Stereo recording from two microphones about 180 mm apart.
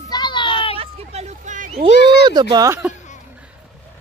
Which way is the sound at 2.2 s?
25° right (ahead or behind).